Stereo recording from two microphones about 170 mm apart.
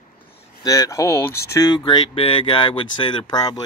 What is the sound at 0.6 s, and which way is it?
Speech, 20° left (ahead or behind).